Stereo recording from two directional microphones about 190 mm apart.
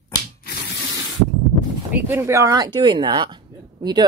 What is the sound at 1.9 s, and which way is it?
Speech, 10° right (ahead or behind).